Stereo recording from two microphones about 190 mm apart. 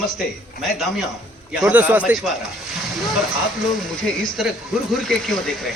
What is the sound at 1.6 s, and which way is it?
Speech, 10° right (ahead or behind).